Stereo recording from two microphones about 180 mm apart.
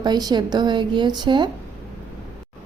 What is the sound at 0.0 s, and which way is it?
A woman's voice, 20° right (ahead or behind).